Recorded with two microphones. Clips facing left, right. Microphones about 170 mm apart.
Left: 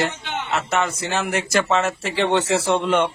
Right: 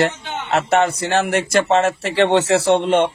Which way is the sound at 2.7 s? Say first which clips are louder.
Right 4 dB; 30° right (ahead or behind).